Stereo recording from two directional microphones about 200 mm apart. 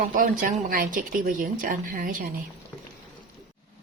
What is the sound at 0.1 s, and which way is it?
A woman's voice, 45° right (ahead or behind).